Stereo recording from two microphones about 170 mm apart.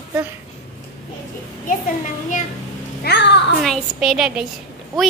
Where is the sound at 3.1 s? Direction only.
70° left (ahead or behind).